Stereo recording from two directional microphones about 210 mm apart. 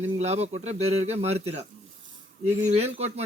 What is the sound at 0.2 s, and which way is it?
Speech, 30° right (ahead or behind).